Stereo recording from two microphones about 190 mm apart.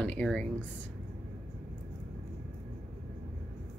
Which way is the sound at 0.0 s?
5° left (ahead or behind).